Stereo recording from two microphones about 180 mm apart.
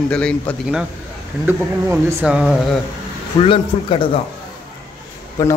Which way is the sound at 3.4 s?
30° left (ahead or behind).